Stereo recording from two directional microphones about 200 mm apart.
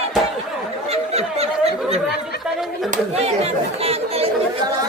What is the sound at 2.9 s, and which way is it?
Chatter, 30° right (ahead or behind).